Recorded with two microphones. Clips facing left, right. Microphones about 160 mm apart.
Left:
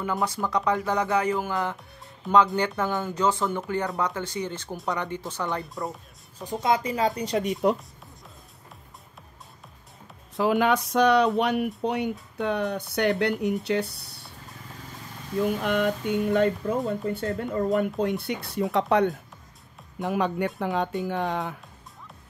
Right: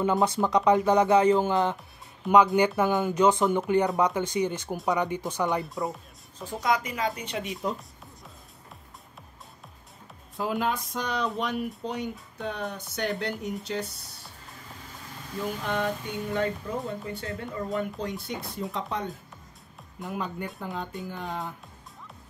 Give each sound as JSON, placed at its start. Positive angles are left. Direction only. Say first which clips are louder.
{"t": 0.0, "sound": "speech", "louder": "right 4 dB", "side_deg": -25}
{"t": 5.6, "sound": "speech", "louder": "right 2 dB", "side_deg": 0}
{"t": 6.4, "sound": "speech", "louder": "left 3 dB", "side_deg": 20}
{"t": 10.3, "sound": "speech", "louder": "left 6 dB", "side_deg": 75}
{"t": 15.6, "sound": "speech", "louder": "left 5 dB", "side_deg": 65}
{"t": 20.1, "sound": "speech", "louder": "left 8 dB", "side_deg": 80}